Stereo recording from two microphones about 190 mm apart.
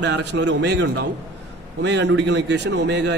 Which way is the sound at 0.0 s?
65° right (ahead or behind).